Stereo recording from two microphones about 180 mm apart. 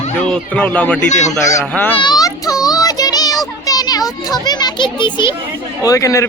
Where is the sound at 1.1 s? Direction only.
40° left (ahead or behind).